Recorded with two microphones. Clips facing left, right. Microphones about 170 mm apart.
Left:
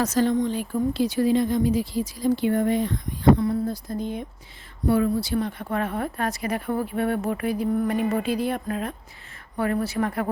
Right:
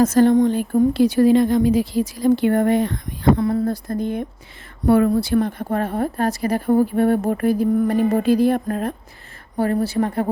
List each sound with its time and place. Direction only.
0.0 s speech: 55° right (ahead or behind)
3.3 s speech: 90° right; by 10.2 s 30° right (ahead or behind)